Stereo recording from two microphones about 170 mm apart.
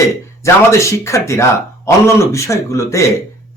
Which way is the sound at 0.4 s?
15° left (ahead or behind).